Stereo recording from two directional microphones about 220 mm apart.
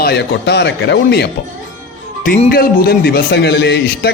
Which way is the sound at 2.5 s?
45° left (ahead or behind).